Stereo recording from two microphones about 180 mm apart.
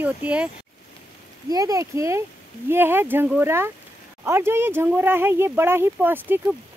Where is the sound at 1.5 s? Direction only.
20° right (ahead or behind).